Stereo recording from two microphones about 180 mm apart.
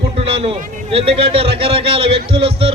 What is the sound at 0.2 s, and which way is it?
A man's voice, 35° right (ahead or behind).